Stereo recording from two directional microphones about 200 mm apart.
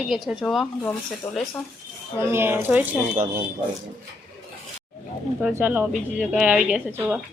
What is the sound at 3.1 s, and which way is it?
Speech, 40° right (ahead or behind).